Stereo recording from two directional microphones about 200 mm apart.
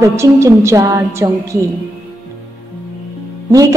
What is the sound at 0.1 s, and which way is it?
A woman's voice, 15° right (ahead or behind).